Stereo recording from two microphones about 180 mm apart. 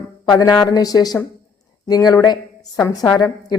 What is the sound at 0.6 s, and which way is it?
A woman's voice, 20° left (ahead or behind).